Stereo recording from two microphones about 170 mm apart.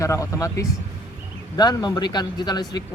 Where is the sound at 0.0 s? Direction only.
20° left (ahead or behind).